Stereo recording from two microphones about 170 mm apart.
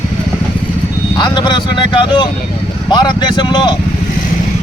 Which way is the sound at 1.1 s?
25° left (ahead or behind).